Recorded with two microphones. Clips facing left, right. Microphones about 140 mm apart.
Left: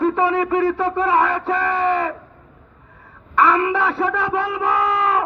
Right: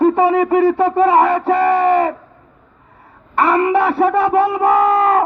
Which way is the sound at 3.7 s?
55° right (ahead or behind).